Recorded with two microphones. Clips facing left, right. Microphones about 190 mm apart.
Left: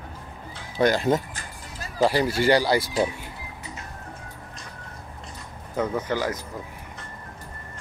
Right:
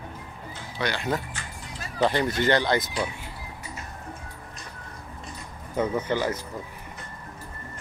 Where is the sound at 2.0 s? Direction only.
10° left (ahead or behind).